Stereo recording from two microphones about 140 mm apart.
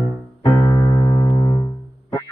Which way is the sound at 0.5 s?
25° left (ahead or behind).